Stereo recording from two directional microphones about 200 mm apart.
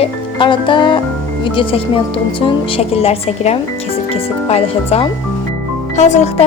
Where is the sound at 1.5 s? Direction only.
25° left (ahead or behind).